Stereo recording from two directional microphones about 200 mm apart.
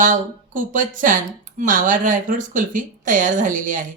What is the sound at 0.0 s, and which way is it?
Speech, 40° right (ahead or behind).